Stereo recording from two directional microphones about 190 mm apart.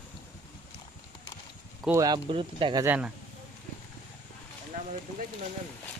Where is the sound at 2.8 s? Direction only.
10° right (ahead or behind).